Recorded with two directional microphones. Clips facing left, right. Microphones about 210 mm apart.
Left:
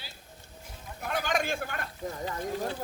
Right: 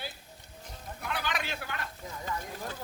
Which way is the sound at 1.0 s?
45° left (ahead or behind).